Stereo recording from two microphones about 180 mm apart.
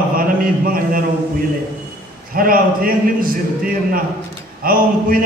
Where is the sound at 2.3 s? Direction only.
55° right (ahead or behind).